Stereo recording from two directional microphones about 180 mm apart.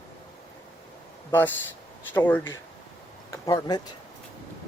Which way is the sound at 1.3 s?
10° left (ahead or behind).